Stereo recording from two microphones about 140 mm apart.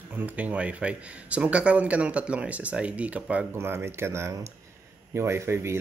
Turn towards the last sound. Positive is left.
turn(degrees=-20)  # may be behind; listen again after turning